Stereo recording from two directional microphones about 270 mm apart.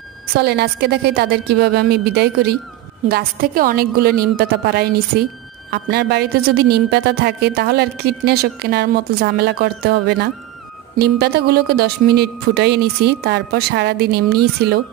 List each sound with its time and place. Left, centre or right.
0.3 s a woman's voice: right